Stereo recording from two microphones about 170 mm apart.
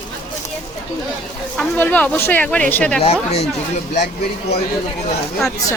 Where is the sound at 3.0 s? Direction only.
35° left (ahead or behind).